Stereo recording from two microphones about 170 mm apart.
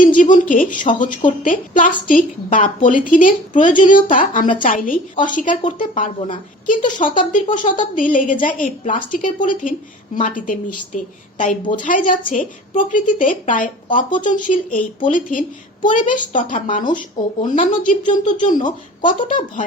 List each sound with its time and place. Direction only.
0.2 s a woman's voice: 50° left (ahead or behind)